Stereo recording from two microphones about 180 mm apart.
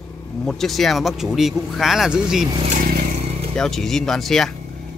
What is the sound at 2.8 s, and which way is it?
Vehicle, 55° right (ahead or behind).